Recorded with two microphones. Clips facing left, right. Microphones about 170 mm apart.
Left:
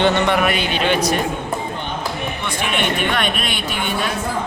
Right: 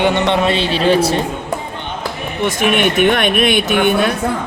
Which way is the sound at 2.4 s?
50° right (ahead or behind).